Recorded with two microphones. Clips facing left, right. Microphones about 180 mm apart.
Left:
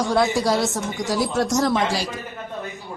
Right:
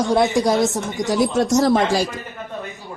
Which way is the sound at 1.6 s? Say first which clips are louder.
Right 4 dB; 45° right (ahead or behind).